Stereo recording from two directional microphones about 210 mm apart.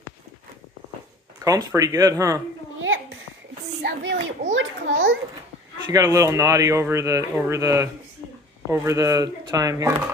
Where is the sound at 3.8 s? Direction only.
50° right (ahead or behind).